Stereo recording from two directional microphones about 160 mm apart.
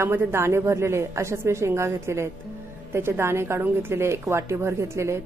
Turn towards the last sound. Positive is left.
turn(degrees=-15)  # may be behind; listen again after turning